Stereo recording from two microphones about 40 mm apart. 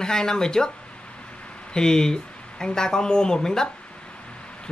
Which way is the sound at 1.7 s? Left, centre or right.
Centre.